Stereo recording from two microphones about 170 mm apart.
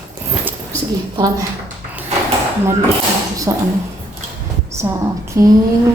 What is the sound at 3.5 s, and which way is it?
Speech, 20° right (ahead or behind).